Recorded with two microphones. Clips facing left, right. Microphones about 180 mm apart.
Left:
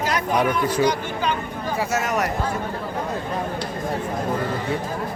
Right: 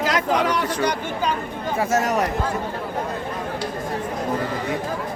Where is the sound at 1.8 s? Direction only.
45° right (ahead or behind).